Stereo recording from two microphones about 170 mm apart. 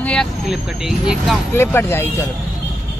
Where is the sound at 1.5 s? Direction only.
15° left (ahead or behind).